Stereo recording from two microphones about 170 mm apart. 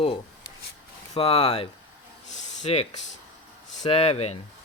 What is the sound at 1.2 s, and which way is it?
Speech, 35° left (ahead or behind).